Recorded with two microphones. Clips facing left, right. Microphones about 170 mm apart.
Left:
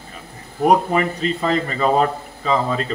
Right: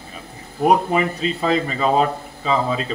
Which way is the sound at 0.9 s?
10° right (ahead or behind).